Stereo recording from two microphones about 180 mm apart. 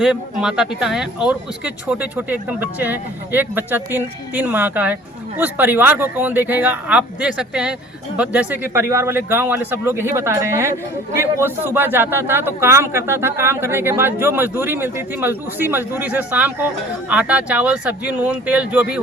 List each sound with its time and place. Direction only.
0.0 s speech: 5° right (ahead or behind)